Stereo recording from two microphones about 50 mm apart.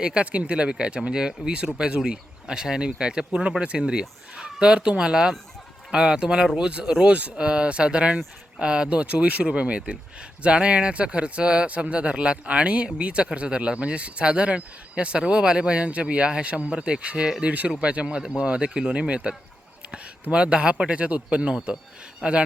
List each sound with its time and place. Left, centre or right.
0.0 s speech: right